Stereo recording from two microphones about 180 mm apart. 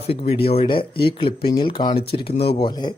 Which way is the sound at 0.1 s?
35° left (ahead or behind).